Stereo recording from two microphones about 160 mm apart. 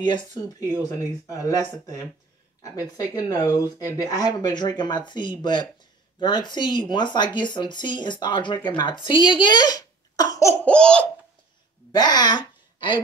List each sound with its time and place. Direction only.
0.0 s speech: 25° left (ahead or behind)
10.6 s laughter: 5° left (ahead or behind)
11.9 s speech: 25° left (ahead or behind)